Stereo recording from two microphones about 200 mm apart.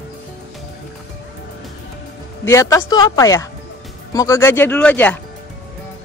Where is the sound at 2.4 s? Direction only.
15° left (ahead or behind).